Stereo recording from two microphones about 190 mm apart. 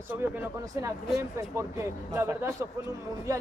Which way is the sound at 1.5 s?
15° right (ahead or behind).